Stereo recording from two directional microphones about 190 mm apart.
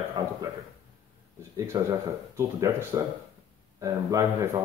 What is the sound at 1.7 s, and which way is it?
A man's voice, 15° right (ahead or behind).